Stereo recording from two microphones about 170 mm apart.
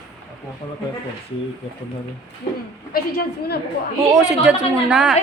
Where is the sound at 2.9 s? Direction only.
70° left (ahead or behind).